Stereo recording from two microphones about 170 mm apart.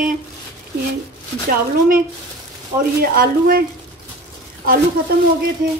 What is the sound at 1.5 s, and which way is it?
Speech, 55° right (ahead or behind).